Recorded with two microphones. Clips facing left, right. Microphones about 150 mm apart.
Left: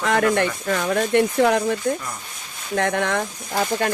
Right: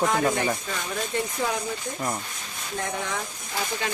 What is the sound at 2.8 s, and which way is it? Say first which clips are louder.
Speech: left 9 dB; 70° left (ahead or behind).